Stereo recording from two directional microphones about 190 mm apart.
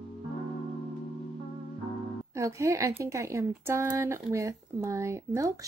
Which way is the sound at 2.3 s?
15° right (ahead or behind).